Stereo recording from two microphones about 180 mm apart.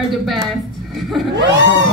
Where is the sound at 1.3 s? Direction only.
85° right.